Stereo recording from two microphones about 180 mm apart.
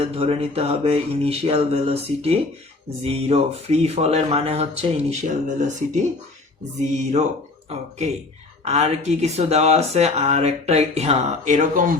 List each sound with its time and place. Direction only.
0.0 s speech: 35° right (ahead or behind)